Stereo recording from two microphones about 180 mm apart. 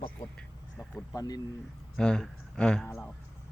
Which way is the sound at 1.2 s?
20° left (ahead or behind).